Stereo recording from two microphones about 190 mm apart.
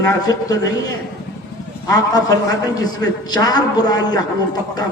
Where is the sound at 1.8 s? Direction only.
20° left (ahead or behind).